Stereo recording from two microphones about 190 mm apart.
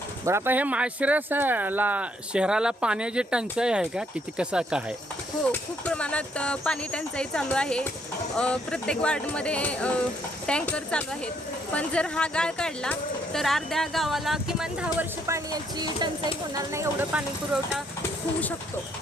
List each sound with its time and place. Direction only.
0.3 s speech: 10° right (ahead or behind)
5.5 s speech: 5° left (ahead or behind)
15.3 s speech: 15° right (ahead or behind)